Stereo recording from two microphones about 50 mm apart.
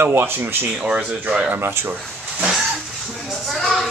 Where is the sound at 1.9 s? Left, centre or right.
Right.